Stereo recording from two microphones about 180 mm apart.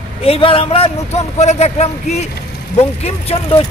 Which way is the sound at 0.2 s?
30° left (ahead or behind).